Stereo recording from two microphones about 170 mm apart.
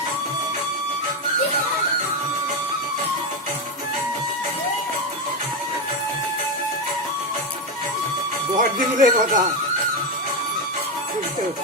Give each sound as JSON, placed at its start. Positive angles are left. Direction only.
{"t": 8.5, "sound": "speech", "side_deg": -50}